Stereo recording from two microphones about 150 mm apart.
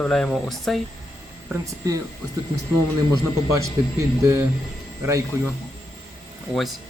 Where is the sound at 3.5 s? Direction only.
20° right (ahead or behind).